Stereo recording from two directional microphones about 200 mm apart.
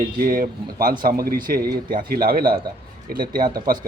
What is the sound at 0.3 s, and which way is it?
Speech, 45° right (ahead or behind).